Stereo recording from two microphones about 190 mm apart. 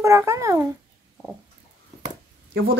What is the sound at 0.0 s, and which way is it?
Speech, 15° right (ahead or behind).